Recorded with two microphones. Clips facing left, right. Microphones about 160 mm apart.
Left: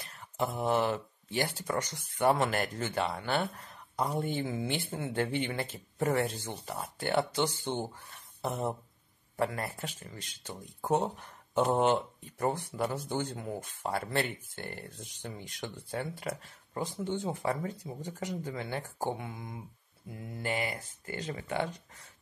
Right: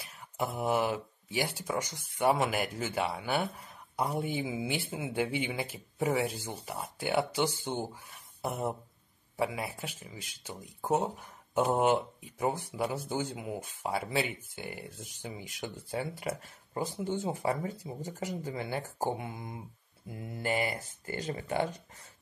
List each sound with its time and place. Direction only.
0.0 s speech: 10° right (ahead or behind)
20.4 s speech: 45° right (ahead or behind)